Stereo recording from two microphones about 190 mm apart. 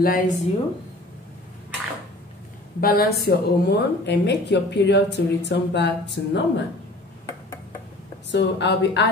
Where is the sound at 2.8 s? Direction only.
50° left (ahead or behind).